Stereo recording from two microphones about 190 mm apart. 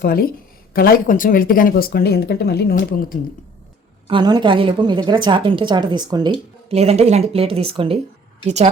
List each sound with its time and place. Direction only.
0.0 s speech: 50° left (ahead or behind)
4.1 s a woman's voice: 25° right (ahead or behind)